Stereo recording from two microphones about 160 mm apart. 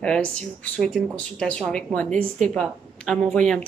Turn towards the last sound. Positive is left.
turn(degrees=5)  # may be behind; listen again after turning